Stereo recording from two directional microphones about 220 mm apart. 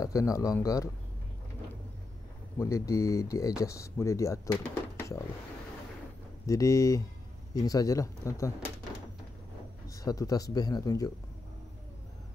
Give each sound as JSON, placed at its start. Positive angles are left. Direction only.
{"t": 0.0, "sound": "speech", "side_deg": 15}
{"t": 2.6, "sound": "speech", "side_deg": 15}
{"t": 6.4, "sound": "speech", "side_deg": 15}
{"t": 9.8, "sound": "speech", "side_deg": 15}